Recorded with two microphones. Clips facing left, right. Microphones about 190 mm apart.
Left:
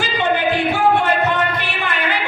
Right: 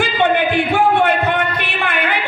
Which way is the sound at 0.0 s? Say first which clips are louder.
Right 3 dB; 60° right (ahead or behind).